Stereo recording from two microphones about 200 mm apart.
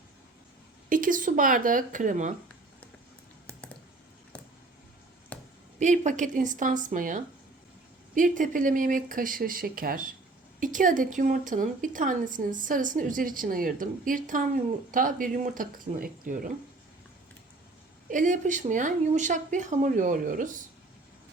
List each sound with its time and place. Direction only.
0.9 s speech: 40° right (ahead or behind)
5.3 s a sound: 10° left (ahead or behind)
5.8 s a woman's voice: 35° right (ahead or behind)
18.1 s a woman's voice: 40° right (ahead or behind)